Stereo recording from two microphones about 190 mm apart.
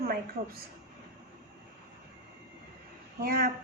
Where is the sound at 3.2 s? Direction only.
50° right (ahead or behind).